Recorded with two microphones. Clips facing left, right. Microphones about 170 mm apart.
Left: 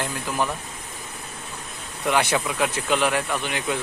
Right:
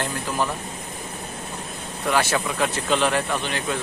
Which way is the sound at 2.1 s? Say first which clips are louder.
Even; 15° left (ahead or behind).